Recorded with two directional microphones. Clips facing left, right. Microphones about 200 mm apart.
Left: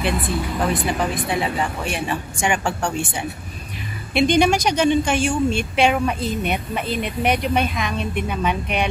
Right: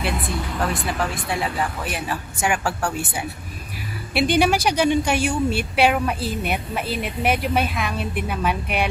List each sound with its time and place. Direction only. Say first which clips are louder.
0.6 s speech: left 3 dB; 5° left (ahead or behind)
0.9 s speech: left 3 dB; 20° left (ahead or behind)
1.3 s a woman's voice: left 2 dB; centre (ahead or behind)